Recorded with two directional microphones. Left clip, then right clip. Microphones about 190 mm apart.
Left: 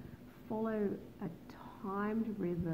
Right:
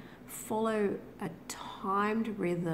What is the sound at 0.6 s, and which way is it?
A woman's voice, 20° right (ahead or behind).